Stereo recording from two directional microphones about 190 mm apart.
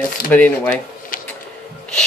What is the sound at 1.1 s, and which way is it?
Music, 45° left (ahead or behind).